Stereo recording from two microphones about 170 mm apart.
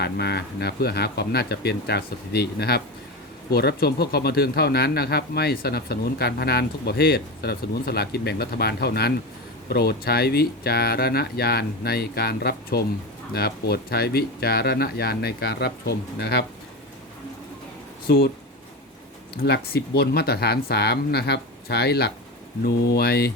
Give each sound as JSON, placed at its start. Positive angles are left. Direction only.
{"t": 0.0, "sound": "speech", "side_deg": 75}
{"t": 19.4, "sound": "speech", "side_deg": 70}